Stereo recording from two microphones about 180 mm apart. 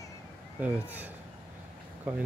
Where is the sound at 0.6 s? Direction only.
10° right (ahead or behind).